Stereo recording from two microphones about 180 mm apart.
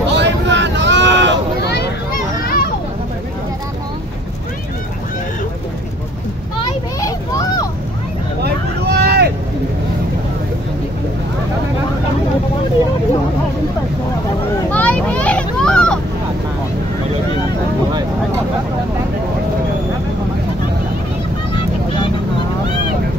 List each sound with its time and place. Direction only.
0.1 s a sound: 75° right (ahead or behind)
1.6 s a sound: 65° left (ahead or behind)
2.4 s children playing: 55° left (ahead or behind)
7.0 s vehicle: 20° left (ahead or behind)
8.4 s vehicle: 65° right (ahead or behind)
14.7 s vehicle: 10° left (ahead or behind)